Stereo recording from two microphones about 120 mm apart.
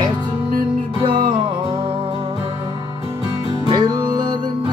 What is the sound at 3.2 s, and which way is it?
Music, 35° right (ahead or behind).